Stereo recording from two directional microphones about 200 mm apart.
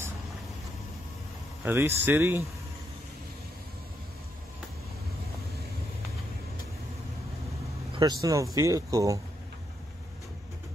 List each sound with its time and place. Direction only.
1.6 s speech: 10° right (ahead or behind)
7.9 s speech: 20° right (ahead or behind)